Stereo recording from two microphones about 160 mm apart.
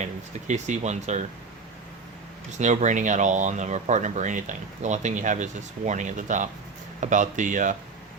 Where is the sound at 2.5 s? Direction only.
50° right (ahead or behind).